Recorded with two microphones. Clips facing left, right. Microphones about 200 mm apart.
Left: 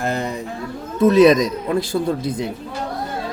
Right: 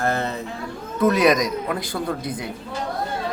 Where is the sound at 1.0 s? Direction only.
25° left (ahead or behind).